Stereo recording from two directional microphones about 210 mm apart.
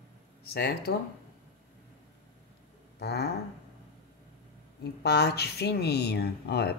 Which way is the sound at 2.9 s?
50° left (ahead or behind).